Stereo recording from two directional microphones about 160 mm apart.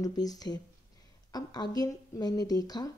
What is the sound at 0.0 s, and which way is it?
Speech, 25° left (ahead or behind).